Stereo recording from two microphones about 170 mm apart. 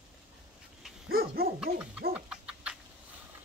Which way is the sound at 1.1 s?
65° right (ahead or behind).